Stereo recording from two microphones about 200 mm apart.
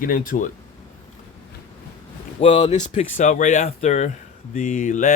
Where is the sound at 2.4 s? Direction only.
30° left (ahead or behind).